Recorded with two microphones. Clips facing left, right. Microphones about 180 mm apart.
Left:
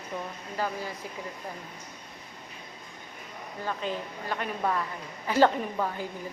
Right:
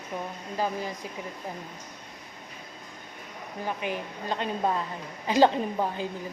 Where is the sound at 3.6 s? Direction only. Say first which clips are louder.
Right 1 dB; 15° right (ahead or behind).